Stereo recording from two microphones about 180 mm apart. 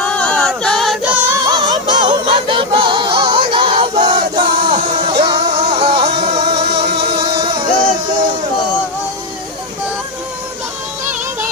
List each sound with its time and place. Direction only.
0.0 s music: 5° left (ahead or behind); by 6.4 s 30° right (ahead or behind)
6.8 s music: 65° right (ahead or behind)
7.3 s music: 25° right (ahead or behind)